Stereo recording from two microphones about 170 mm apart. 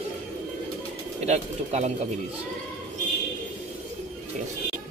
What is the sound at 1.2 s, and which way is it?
Speech, 40° right (ahead or behind).